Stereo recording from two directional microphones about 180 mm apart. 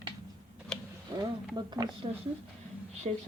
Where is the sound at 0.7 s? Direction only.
5° left (ahead or behind).